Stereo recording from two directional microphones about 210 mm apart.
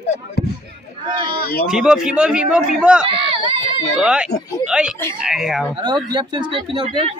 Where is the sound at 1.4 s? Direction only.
45° left (ahead or behind).